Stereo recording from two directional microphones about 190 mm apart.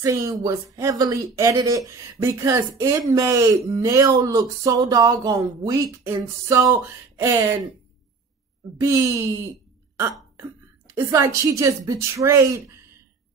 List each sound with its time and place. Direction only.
0.0 s speech: 15° right (ahead or behind)
8.7 s speech: 15° right (ahead or behind)
11.0 s speech: 15° right (ahead or behind)